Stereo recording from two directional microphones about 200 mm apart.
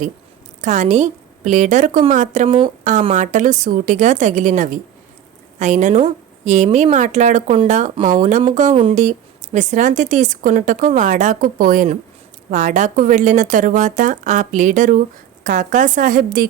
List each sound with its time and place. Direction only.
0.6 s a woman's voice: 35° right (ahead or behind)
8.7 s a woman's voice: 25° right (ahead or behind); by 16.5 s 45° right (ahead or behind)